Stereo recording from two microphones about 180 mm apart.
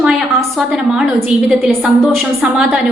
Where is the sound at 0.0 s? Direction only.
Centre (ahead or behind).